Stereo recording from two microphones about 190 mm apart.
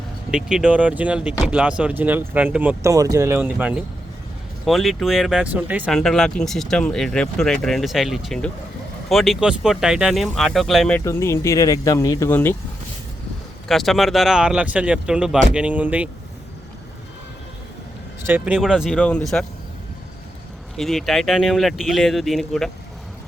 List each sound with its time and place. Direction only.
0.3 s speech: 5° right (ahead or behind)
11.0 s speech: 15° left (ahead or behind)
13.7 s speech: centre (ahead or behind)
18.3 s speech: 10° right (ahead or behind)
20.7 s speech: centre (ahead or behind)